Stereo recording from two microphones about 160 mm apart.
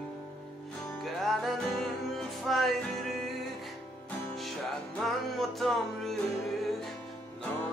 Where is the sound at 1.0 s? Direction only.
Centre (ahead or behind).